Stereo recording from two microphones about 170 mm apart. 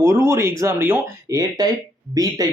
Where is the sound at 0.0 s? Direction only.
15° right (ahead or behind).